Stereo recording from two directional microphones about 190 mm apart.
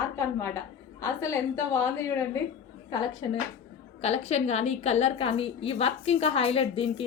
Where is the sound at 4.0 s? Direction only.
35° left (ahead or behind).